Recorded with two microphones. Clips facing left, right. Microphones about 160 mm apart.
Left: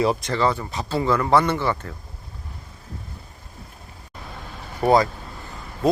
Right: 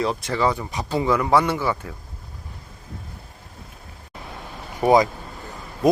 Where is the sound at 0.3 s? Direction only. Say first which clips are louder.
Even; 10° right (ahead or behind).